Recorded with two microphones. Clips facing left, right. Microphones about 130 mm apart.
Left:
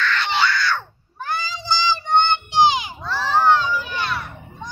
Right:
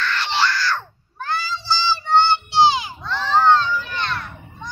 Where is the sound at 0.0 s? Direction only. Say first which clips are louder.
Left 1 dB; centre (ahead or behind).